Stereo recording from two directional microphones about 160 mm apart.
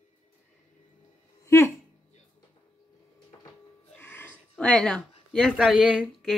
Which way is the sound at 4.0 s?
10° left (ahead or behind).